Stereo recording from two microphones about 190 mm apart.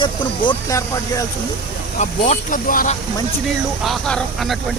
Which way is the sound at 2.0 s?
40° left (ahead or behind).